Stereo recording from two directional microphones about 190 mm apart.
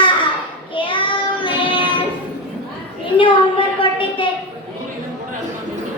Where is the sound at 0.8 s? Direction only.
25° left (ahead or behind).